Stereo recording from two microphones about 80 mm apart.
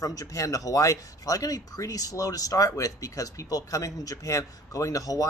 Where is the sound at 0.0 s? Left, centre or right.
Left.